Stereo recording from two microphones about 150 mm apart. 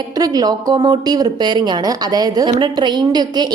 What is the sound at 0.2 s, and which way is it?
A woman's voice, 25° right (ahead or behind).